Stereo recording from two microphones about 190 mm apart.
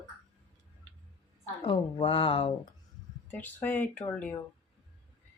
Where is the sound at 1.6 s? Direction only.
25° left (ahead or behind).